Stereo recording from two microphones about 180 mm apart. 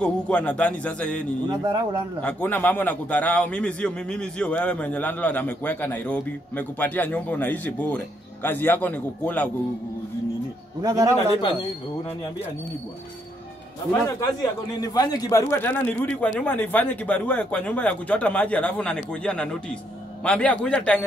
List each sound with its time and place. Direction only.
0.0 s a man's voice: 5° left (ahead or behind)
1.5 s a man's voice: 25° right (ahead or behind)
2.2 s a man's voice: 10° left (ahead or behind)
10.8 s a man's voice: 20° right (ahead or behind)
14.2 s a man's voice: 20° left (ahead or behind)